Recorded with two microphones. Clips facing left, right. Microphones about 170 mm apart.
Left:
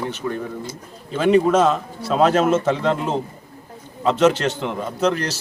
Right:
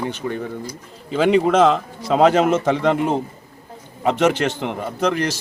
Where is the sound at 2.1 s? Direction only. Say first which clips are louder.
Right 2 dB; 70° right (ahead or behind).